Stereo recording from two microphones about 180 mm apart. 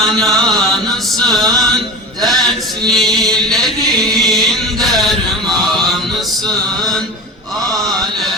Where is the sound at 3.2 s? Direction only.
Centre (ahead or behind).